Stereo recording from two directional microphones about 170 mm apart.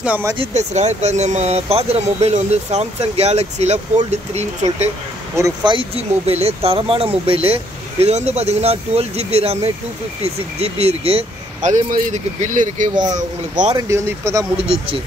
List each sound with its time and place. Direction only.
0.0 s speech: 10° right (ahead or behind)
0.4 s speech: 45° right (ahead or behind)
5.3 s speech: 20° right (ahead or behind); by 13.7 s 45° right (ahead or behind)
13.7 s speech: 15° right (ahead or behind)